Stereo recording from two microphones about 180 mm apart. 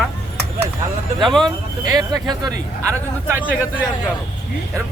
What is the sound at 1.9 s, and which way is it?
Speech, 20° right (ahead or behind).